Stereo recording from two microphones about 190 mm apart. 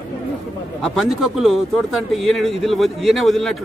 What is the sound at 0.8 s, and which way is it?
Speech, centre (ahead or behind).